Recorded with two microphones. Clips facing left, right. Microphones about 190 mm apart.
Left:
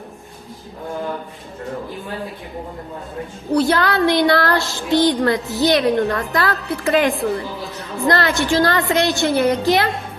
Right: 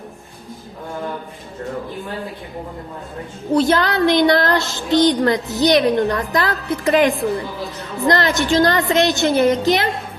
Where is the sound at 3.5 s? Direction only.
20° right (ahead or behind).